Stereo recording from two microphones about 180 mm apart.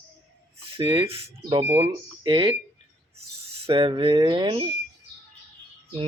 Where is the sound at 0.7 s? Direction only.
30° right (ahead or behind).